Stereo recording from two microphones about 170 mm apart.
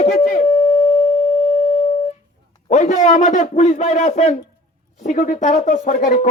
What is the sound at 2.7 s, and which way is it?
A man's voice, 45° left (ahead or behind).